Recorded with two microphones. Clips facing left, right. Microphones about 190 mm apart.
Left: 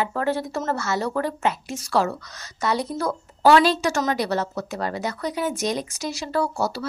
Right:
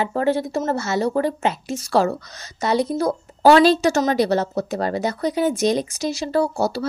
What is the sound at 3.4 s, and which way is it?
A woman's voice, 30° right (ahead or behind).